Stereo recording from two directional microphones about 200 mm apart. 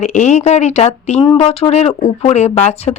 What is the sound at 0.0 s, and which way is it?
Speech, 35° left (ahead or behind).